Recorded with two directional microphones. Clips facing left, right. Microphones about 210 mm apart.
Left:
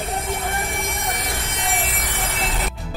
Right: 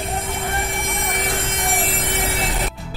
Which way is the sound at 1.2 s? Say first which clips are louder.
Right 4 dB; 50° right (ahead or behind).